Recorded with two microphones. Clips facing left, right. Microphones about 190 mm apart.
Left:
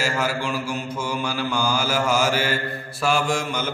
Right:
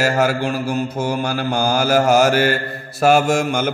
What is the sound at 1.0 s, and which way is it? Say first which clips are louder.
Mantra: right 5 dB; 55° right (ahead or behind).